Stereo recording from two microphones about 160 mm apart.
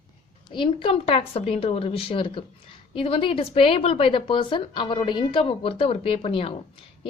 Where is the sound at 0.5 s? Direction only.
30° left (ahead or behind).